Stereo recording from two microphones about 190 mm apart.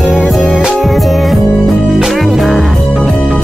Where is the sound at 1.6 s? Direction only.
Centre (ahead or behind).